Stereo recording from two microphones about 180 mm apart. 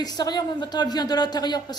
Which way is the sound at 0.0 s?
25° left (ahead or behind).